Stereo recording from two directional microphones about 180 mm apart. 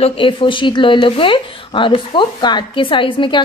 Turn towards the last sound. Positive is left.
turn(degrees=25)  # may be behind; listen again after turning